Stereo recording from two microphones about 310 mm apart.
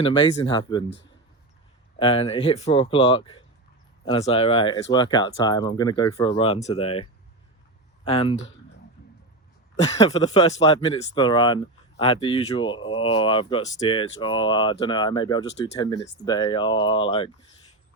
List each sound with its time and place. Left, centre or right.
0.0 s speech: centre
2.0 s speech: centre
10.1 s speech: left